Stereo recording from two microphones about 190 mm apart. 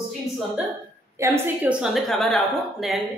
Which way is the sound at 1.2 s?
15° right (ahead or behind).